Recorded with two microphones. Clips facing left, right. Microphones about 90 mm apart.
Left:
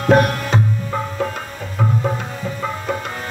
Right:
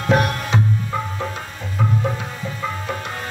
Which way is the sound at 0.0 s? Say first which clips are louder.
Left 4 dB; 40° left (ahead or behind).